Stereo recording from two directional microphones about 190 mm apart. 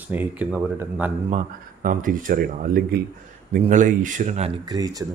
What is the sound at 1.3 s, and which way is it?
Speech, 45° right (ahead or behind).